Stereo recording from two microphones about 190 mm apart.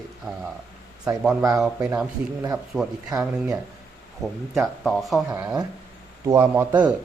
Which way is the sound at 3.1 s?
20° right (ahead or behind).